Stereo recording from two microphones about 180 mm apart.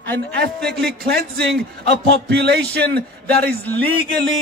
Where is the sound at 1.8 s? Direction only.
65° right (ahead or behind).